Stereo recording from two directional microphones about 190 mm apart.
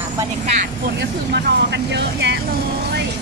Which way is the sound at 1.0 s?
65° right (ahead or behind).